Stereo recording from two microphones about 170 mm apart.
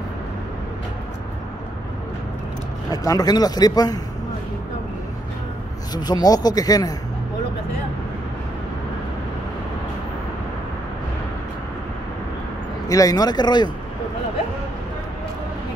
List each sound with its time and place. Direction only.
3.0 s speech: 20° left (ahead or behind)
5.9 s speech: 25° left (ahead or behind)
12.8 s speech: 20° left (ahead or behind)